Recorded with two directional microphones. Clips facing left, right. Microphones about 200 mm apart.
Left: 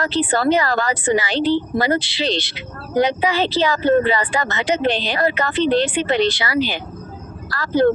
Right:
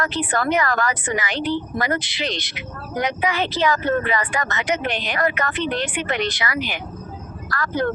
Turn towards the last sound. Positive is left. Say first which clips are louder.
# left 7 dB
turn(degrees=30)  # may be behind; listen again after turning